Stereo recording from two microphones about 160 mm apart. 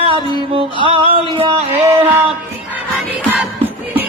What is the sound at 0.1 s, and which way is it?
Music, 35° right (ahead or behind).